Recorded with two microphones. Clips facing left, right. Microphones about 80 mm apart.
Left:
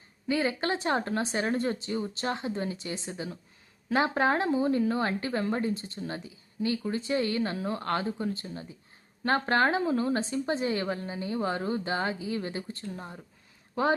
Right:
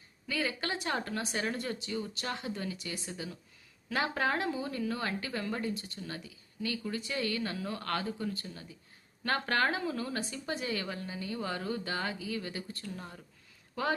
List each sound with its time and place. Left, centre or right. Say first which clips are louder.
0.3 s a woman's voice: left 7 dB; left